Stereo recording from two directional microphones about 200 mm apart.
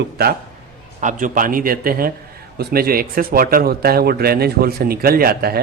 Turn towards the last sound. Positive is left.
turn(degrees=-50)  # may be behind; listen again after turning